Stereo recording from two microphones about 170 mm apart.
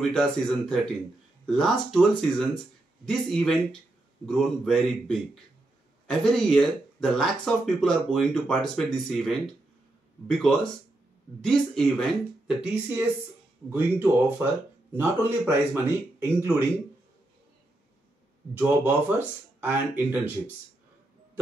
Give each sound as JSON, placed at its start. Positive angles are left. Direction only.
{"t": 0.1, "sound": "speech", "side_deg": 5}
{"t": 18.5, "sound": "speech", "side_deg": -10}